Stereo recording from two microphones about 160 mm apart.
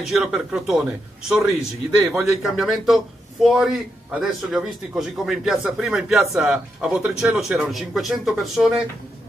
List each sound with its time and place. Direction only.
0.0 s a man's voice: centre (ahead or behind)
2.0 s a man's voice: 15° right (ahead or behind)
2.5 s a man's voice: centre (ahead or behind)